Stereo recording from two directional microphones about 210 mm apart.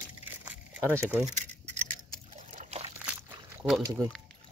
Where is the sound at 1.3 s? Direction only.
35° right (ahead or behind).